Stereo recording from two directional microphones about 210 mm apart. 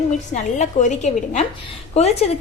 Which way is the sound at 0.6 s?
35° left (ahead or behind).